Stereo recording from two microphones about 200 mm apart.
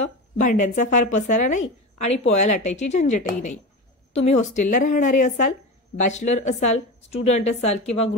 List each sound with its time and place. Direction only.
0.0 s speech: 40° left (ahead or behind)